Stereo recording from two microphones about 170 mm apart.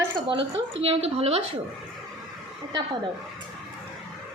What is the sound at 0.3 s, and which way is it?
A woman's voice, 30° right (ahead or behind).